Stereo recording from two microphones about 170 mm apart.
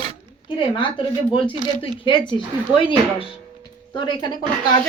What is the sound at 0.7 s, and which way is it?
Speech, 30° left (ahead or behind).